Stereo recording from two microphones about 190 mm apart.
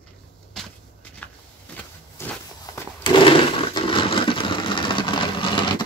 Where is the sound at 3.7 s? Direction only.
25° left (ahead or behind).